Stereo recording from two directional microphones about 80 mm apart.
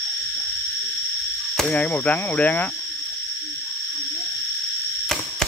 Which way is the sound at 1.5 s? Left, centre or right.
Centre.